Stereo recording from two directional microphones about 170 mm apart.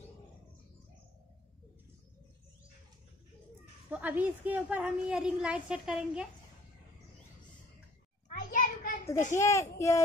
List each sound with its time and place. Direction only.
3.9 s a woman's voice: 10° right (ahead or behind)
8.3 s a sound: 50° left (ahead or behind)
9.3 s speech: 15° left (ahead or behind)